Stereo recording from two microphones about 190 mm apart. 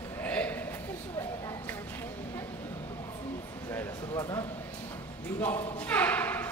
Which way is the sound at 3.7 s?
15° left (ahead or behind).